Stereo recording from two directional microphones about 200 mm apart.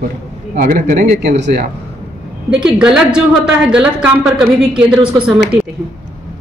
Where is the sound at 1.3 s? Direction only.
55° right (ahead or behind).